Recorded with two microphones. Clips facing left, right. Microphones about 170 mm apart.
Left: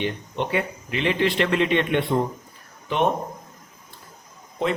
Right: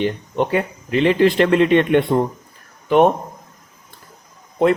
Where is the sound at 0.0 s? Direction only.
40° right (ahead or behind).